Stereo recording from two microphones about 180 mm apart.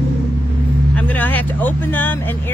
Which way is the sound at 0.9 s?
10° left (ahead or behind).